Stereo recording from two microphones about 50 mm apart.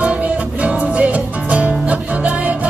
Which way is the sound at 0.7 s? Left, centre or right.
Right.